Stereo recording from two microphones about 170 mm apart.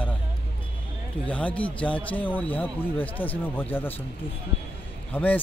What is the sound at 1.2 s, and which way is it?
Speech, 10° left (ahead or behind).